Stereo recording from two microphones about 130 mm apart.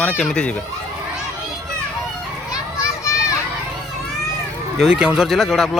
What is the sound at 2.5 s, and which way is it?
Children playing, 25° left (ahead or behind).